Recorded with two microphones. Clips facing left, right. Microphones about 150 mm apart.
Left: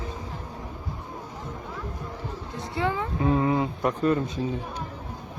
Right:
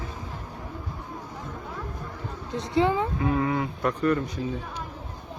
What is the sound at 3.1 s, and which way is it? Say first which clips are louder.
Speech: left 2 dB; 25° left (ahead or behind).